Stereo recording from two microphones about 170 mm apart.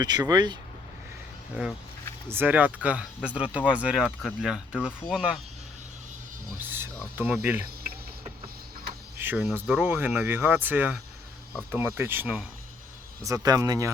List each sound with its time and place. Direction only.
0.0 s speech: 25° right (ahead or behind)
2.3 s speech: 10° right (ahead or behind)
6.6 s a sound: 10° right (ahead or behind)
7.2 s speech: 10° right (ahead or behind)
9.1 s speech: 10° right (ahead or behind)
13.2 s speech: 20° right (ahead or behind)